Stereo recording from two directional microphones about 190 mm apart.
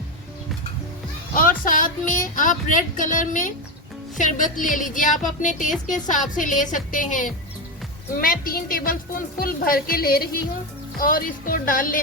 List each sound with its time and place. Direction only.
1.4 s a woman's voice: 45° left (ahead or behind)